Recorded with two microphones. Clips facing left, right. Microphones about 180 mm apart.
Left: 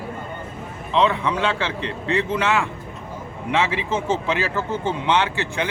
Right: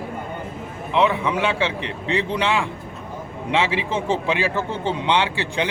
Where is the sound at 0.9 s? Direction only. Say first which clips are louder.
Even; 10° right (ahead or behind).